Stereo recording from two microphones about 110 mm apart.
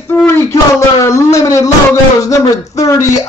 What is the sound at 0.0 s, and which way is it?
Speech, 25° left (ahead or behind).